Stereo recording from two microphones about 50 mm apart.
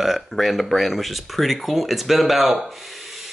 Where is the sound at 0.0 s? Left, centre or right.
Centre.